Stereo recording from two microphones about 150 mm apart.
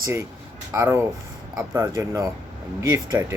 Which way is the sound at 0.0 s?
20° right (ahead or behind).